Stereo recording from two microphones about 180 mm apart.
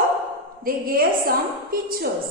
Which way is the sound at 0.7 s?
55° right (ahead or behind).